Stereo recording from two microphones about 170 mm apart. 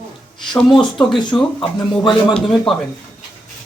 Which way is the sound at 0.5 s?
5° left (ahead or behind).